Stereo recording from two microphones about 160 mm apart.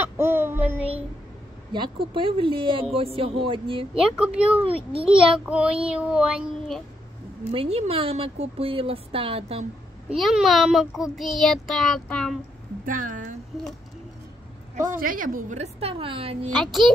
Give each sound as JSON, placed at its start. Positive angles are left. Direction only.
{"t": 0.0, "sound": "child singing", "side_deg": -15}
{"t": 1.7, "sound": "speech", "side_deg": -30}
{"t": 4.2, "sound": "speech", "side_deg": -5}
{"t": 4.6, "sound": "speech", "side_deg": -35}
{"t": 5.0, "sound": "a child's voice", "side_deg": -5}
{"t": 7.5, "sound": "speech", "side_deg": -40}
{"t": 10.0, "sound": "a child's voice", "side_deg": -5}
{"t": 12.8, "sound": "speech", "side_deg": -55}
{"t": 14.8, "sound": "a woman's voice", "side_deg": -60}
{"t": 16.5, "sound": "a child's voice", "side_deg": 0}